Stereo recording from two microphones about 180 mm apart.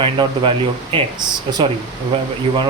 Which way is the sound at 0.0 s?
30° right (ahead or behind).